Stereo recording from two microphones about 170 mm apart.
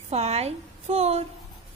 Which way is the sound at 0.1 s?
40° right (ahead or behind).